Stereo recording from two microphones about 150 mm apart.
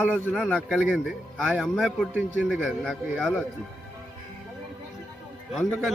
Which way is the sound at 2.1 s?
10° right (ahead or behind).